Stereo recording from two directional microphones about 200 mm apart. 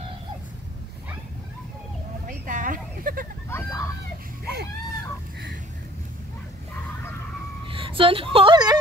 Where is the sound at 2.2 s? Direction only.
40° right (ahead or behind).